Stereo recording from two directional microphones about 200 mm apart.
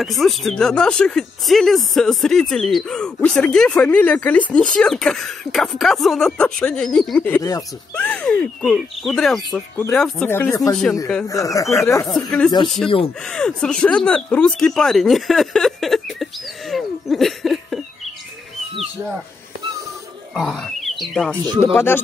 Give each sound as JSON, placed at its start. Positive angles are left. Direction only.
{"t": 0.0, "sound": "speech", "side_deg": 0}
{"t": 10.7, "sound": "speech", "side_deg": 5}
{"t": 11.2, "sound": "speech", "side_deg": 15}
{"t": 12.6, "sound": "speech", "side_deg": 0}
{"t": 20.3, "sound": "speech", "side_deg": 0}
{"t": 21.7, "sound": "speech", "side_deg": 10}